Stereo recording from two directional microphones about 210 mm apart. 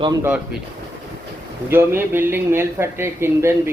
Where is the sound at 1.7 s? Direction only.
10° right (ahead or behind).